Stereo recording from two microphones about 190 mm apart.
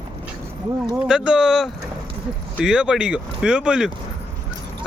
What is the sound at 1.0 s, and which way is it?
Speech, 5° right (ahead or behind).